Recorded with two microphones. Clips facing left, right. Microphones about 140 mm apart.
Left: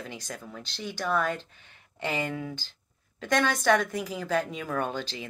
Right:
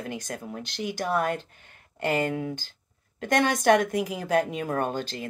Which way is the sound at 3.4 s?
15° right (ahead or behind).